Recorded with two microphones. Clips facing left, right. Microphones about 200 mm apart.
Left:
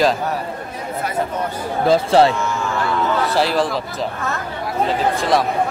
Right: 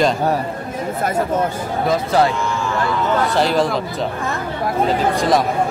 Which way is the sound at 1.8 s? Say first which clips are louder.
Left 3 dB; 30° left (ahead or behind).